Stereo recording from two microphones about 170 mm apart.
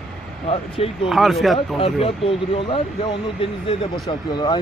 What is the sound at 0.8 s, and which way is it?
Speech, 35° left (ahead or behind).